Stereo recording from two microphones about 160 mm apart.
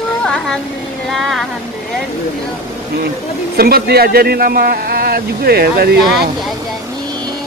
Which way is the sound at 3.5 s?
70° right (ahead or behind).